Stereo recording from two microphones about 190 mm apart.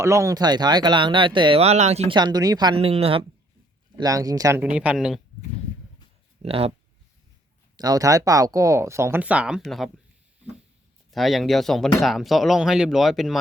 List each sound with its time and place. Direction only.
0.0 s speech: 15° right (ahead or behind); by 2.1 s 35° right (ahead or behind)
2.1 s speech: 20° right (ahead or behind)
3.9 s speech: 20° right (ahead or behind); by 5.2 s 5° right (ahead or behind)
6.4 s speech: 30° right (ahead or behind)
7.8 s speech: 20° right (ahead or behind); by 9.9 s centre (ahead or behind)
11.1 s speech: centre (ahead or behind)